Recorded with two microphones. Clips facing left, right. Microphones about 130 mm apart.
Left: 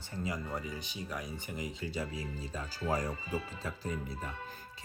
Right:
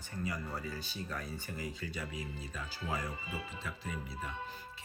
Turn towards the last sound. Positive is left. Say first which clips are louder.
# even
turn(degrees=45)  # may be behind; listen again after turning